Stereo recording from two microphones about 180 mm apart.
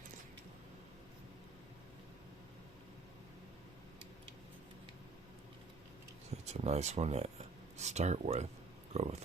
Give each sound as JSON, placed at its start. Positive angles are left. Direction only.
{"t": 6.3, "sound": "speech", "side_deg": -35}